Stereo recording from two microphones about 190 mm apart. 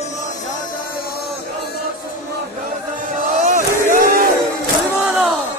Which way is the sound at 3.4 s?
45° right (ahead or behind).